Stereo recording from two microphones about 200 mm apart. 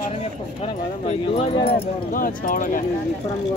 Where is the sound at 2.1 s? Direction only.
45° left (ahead or behind).